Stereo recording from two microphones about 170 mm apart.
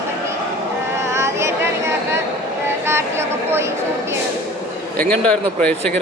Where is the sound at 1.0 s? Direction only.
15° right (ahead or behind).